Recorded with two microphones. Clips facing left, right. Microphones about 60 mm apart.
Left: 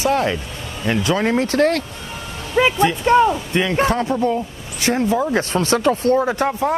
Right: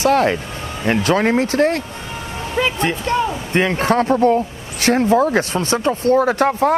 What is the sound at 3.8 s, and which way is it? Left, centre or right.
Speech, right.